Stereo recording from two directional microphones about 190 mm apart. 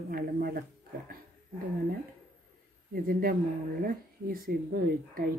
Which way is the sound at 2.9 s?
50° right (ahead or behind).